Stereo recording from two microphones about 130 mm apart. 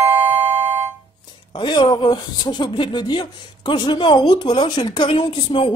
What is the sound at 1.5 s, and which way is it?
Speech, 35° left (ahead or behind).